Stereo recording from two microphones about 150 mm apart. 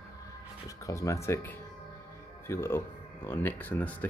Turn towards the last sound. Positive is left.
turn(degrees=10)  # may be behind; listen again after turning